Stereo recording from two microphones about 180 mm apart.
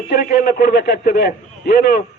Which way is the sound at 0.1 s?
55° left (ahead or behind).